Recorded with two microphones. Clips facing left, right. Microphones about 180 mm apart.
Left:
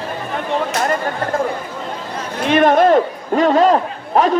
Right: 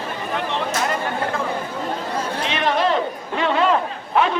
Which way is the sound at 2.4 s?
50° left (ahead or behind).